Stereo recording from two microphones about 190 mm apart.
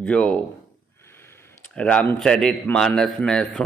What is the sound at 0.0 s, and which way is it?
Speech, 5° left (ahead or behind).